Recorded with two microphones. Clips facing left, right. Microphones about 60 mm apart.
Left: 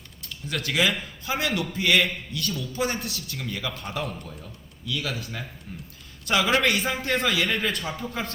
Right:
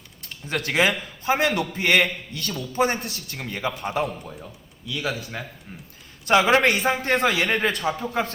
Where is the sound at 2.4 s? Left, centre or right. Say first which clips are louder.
Right 1 dB; right.